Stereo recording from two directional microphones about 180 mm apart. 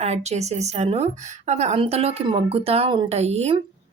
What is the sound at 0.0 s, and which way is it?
Speech, 40° right (ahead or behind).